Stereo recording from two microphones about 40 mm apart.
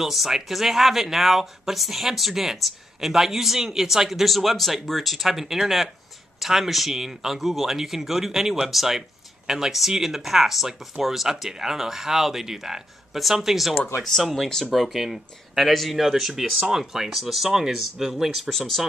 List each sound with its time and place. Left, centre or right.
0.0 s speech: centre